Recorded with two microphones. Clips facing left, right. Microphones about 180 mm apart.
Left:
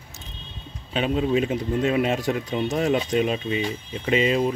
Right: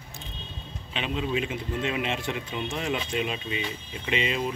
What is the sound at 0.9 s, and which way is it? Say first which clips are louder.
Speech: left 7 dB; 40° left (ahead or behind).